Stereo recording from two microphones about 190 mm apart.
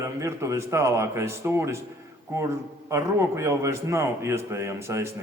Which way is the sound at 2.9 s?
15° right (ahead or behind).